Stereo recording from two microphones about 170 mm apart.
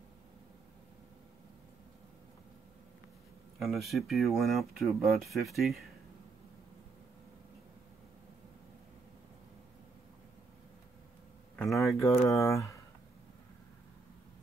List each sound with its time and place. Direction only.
3.5 s speech: centre (ahead or behind)
11.5 s speech: centre (ahead or behind)
12.1 s speech: 20° left (ahead or behind)